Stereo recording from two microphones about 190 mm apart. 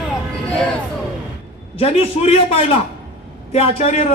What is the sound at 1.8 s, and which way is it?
A man's voice, 30° left (ahead or behind).